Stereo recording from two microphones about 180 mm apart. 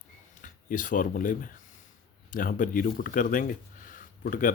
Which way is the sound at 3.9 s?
50° left (ahead or behind).